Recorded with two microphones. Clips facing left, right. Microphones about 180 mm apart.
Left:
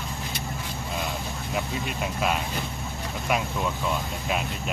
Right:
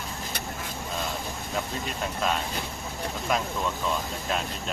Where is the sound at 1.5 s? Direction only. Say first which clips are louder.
Left 2 dB; 10° left (ahead or behind).